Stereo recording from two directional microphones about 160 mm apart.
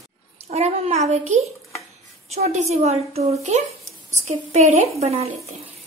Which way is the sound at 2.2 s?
45° right (ahead or behind).